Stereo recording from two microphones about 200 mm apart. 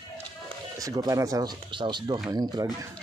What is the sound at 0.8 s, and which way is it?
Speech, 15° right (ahead or behind).